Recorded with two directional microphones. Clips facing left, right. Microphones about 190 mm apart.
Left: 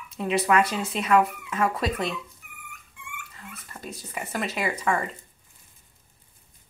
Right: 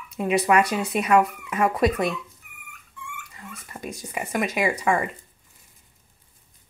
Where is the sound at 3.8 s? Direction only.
15° right (ahead or behind).